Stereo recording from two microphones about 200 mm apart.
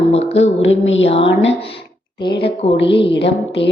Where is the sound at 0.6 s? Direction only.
70° left (ahead or behind).